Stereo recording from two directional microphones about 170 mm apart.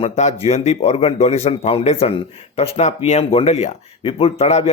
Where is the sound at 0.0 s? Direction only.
40° left (ahead or behind).